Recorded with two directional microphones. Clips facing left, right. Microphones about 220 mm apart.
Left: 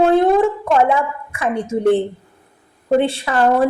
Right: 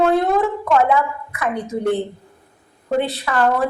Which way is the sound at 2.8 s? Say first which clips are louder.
Left 4 dB; 30° left (ahead or behind).